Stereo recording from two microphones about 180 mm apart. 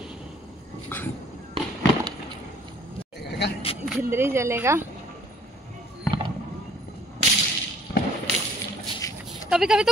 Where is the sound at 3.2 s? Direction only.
65° left (ahead or behind).